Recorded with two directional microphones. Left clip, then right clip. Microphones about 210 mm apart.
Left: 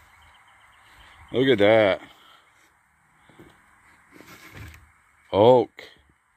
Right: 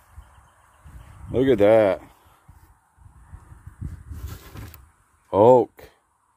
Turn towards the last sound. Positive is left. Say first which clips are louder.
# right 2 dB
turn(degrees=-10)  # may be behind; listen again after turning